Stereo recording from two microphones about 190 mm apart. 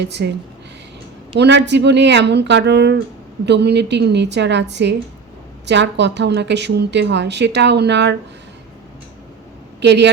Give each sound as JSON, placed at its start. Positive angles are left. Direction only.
{"t": 0.0, "sound": "a woman's voice", "side_deg": -65}
{"t": 1.4, "sound": "a woman's voice", "side_deg": -65}
{"t": 9.8, "sound": "a woman's voice", "side_deg": -65}